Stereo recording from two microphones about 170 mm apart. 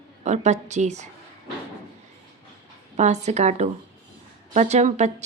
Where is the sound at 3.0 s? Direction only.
40° right (ahead or behind).